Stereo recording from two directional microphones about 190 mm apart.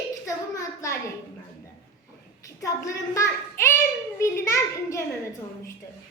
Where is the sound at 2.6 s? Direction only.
15° left (ahead or behind).